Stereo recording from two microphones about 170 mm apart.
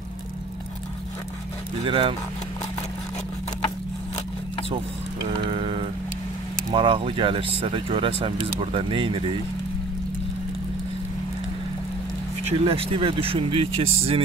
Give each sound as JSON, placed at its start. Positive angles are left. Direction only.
{"t": 1.9, "sound": "speech", "side_deg": -30}
{"t": 5.5, "sound": "a sound", "side_deg": -30}
{"t": 6.7, "sound": "speech", "side_deg": -30}
{"t": 12.4, "sound": "speech", "side_deg": -35}